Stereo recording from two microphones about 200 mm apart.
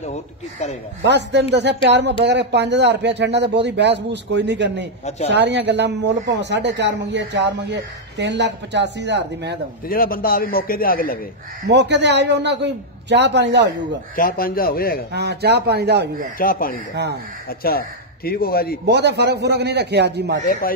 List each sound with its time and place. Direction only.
0.0 s speech: 35° left (ahead or behind)
1.0 s speech: 60° right (ahead or behind)
9.8 s speech: 45° left (ahead or behind)
11.6 s speech: 60° right (ahead or behind)
14.1 s speech: 45° left (ahead or behind)
15.1 s speech: 55° right (ahead or behind)
16.3 s speech: 45° left (ahead or behind)
16.9 s speech: 55° right (ahead or behind)
17.5 s speech: 50° left (ahead or behind)
18.9 s speech: 55° right (ahead or behind)